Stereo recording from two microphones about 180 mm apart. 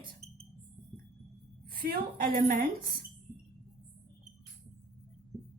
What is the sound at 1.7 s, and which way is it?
A woman's voice, 55° right (ahead or behind).